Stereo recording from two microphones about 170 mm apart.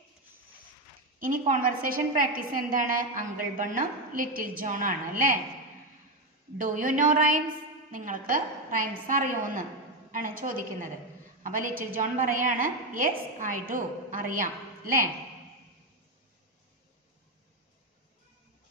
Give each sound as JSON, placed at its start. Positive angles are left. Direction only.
{"t": 1.2, "sound": "a woman's voice", "side_deg": -50}
{"t": 6.6, "sound": "a woman's voice", "side_deg": -50}